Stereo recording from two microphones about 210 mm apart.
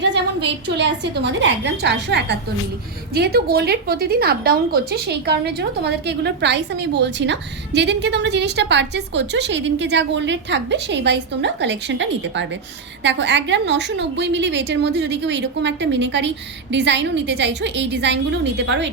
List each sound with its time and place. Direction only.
0.0 s a woman's voice: 55° right (ahead or behind)